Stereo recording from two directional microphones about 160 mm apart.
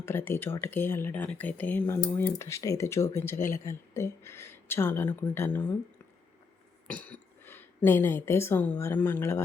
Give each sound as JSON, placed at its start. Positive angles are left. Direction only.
{"t": 0.0, "sound": "speech", "side_deg": 15}
{"t": 6.8, "sound": "a woman's voice", "side_deg": 10}